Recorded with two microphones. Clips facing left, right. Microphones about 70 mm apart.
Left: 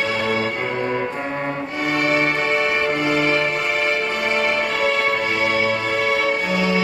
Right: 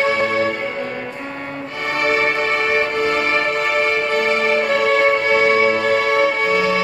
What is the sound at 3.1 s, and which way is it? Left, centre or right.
Music, right.